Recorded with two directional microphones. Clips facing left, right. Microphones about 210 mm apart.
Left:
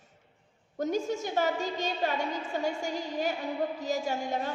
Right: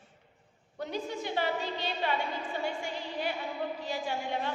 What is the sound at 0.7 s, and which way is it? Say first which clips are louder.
A woman's voice: left 6 dB; 45° left (ahead or behind).